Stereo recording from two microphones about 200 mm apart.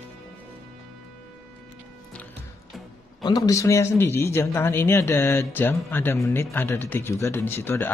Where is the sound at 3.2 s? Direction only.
20° left (ahead or behind).